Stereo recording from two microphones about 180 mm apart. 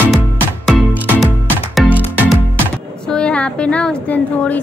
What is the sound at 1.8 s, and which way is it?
Music, 5° right (ahead or behind).